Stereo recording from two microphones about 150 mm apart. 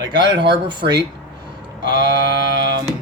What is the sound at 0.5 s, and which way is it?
Speech, 30° right (ahead or behind).